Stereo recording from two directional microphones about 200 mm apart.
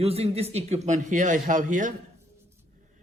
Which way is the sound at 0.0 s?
30° right (ahead or behind).